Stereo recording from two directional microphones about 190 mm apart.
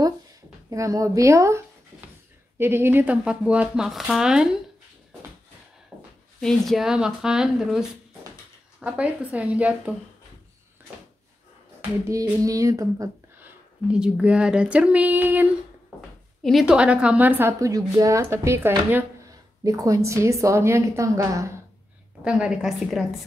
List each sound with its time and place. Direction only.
0.7 s a woman's voice: 15° right (ahead or behind)
2.6 s speech: 10° right (ahead or behind)
6.4 s speech: centre (ahead or behind)
8.8 s a woman's voice: 5° right (ahead or behind)
12.1 s a sound: 15° right (ahead or behind)
13.8 s a woman's voice: 5° right (ahead or behind)
22.2 s speech: 5° right (ahead or behind)